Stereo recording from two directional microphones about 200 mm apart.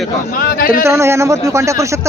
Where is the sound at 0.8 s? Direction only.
15° right (ahead or behind).